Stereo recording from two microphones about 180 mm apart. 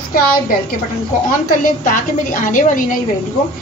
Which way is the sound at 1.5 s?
45° left (ahead or behind).